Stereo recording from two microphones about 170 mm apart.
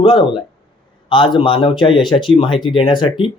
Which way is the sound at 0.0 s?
30° left (ahead or behind).